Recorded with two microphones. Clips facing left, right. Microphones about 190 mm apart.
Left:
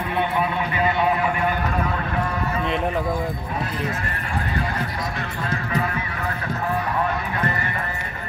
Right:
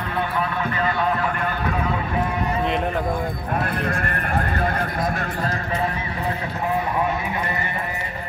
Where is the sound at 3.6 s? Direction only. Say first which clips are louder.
Right 4 dB; 55° right (ahead or behind).